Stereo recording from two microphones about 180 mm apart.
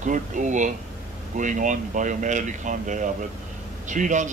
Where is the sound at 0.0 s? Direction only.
45° right (ahead or behind).